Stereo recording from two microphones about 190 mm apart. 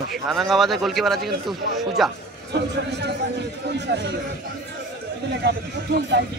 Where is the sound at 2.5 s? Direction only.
60° right (ahead or behind).